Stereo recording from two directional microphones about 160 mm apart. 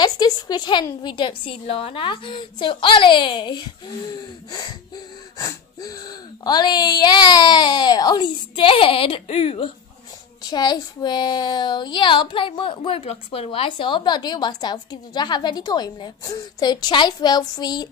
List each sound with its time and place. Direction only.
0.0 s a woman's voice: 25° left (ahead or behind)
10.4 s a woman's voice: 25° left (ahead or behind)